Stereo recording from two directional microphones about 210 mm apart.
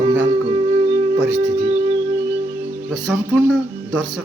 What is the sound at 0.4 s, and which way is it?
Music, 25° right (ahead or behind).